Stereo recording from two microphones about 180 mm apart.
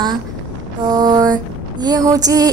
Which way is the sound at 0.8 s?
20° right (ahead or behind).